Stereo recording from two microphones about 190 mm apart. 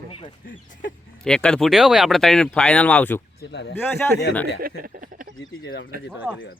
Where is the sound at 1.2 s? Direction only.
5° left (ahead or behind).